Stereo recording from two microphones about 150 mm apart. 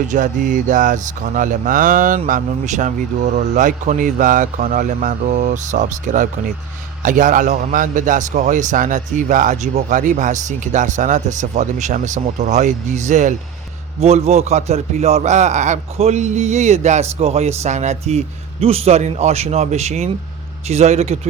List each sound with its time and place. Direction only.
0.1 s a man's voice: 55° right (ahead or behind)